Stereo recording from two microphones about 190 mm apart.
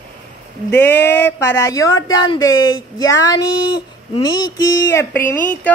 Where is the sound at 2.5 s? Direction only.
90° left.